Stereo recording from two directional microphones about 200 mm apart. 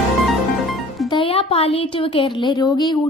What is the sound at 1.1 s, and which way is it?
A woman's voice, 25° left (ahead or behind).